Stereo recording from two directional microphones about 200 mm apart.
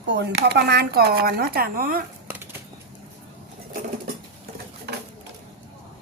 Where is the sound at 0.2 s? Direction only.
55° right (ahead or behind).